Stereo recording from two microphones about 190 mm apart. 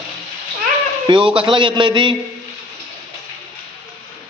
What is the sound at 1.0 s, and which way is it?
A man's voice, 25° right (ahead or behind).